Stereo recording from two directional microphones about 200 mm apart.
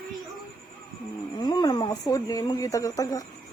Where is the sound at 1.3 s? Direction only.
20° left (ahead or behind).